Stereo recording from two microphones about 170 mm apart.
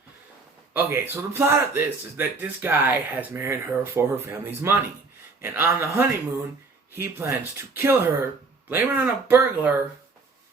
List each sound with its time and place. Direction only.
0.7 s a man's voice: 15° right (ahead or behind)